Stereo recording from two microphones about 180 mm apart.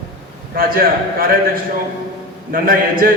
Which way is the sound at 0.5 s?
55° right (ahead or behind).